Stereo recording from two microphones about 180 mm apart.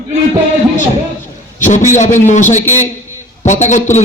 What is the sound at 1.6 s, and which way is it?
Speech, 45° left (ahead or behind).